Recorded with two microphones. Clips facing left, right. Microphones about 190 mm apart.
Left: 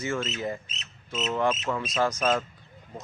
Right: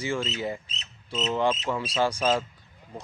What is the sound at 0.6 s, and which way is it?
Cricket, 35° right (ahead or behind).